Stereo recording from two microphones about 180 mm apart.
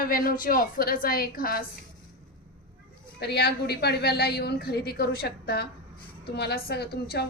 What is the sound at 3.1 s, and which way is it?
A woman's voice, 65° left (ahead or behind).